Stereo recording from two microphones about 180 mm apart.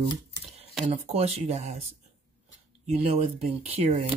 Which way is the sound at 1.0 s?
35° right (ahead or behind).